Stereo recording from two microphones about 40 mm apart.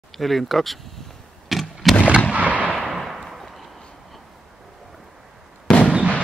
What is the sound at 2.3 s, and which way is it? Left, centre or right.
Fireworks, right.